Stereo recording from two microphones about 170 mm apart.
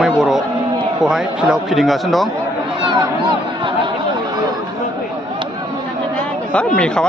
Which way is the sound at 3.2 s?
30° right (ahead or behind).